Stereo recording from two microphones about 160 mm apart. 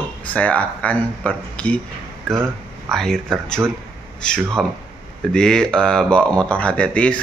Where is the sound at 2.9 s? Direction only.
5° left (ahead or behind).